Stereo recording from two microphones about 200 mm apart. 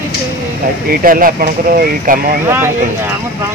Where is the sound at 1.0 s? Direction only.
45° right (ahead or behind).